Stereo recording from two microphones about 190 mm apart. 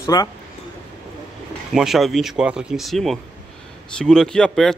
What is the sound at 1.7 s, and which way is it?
Speech, centre (ahead or behind).